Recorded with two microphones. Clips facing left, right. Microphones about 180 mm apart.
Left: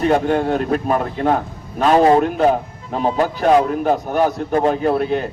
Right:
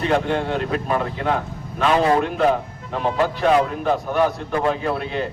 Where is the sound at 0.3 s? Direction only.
40° left (ahead or behind).